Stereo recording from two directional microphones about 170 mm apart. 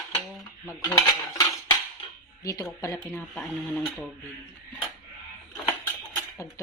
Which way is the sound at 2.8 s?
20° left (ahead or behind).